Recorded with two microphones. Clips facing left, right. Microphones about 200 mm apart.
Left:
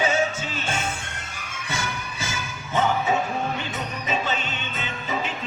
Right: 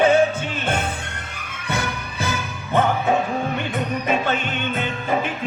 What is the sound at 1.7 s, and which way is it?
Music, 60° right (ahead or behind).